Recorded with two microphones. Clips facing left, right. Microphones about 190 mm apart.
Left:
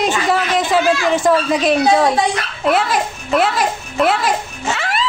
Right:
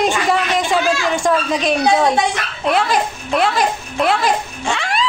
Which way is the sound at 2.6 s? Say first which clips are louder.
Even; centre (ahead or behind).